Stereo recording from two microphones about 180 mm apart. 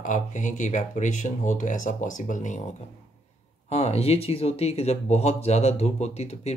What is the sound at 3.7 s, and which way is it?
Speech, 35° left (ahead or behind).